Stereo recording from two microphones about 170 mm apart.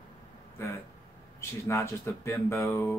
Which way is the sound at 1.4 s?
15° left (ahead or behind).